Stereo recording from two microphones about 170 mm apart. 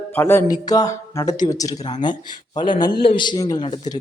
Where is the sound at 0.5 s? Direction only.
20° left (ahead or behind).